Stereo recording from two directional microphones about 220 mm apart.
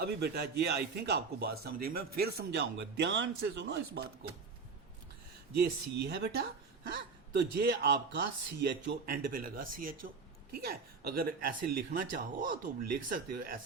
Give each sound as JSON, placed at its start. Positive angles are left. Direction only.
{"t": 0.0, "sound": "a man's voice", "side_deg": -45}
{"t": 5.5, "sound": "a man's voice", "side_deg": -50}